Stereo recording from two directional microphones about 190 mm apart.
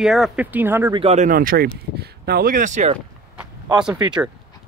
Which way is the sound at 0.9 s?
35° right (ahead or behind).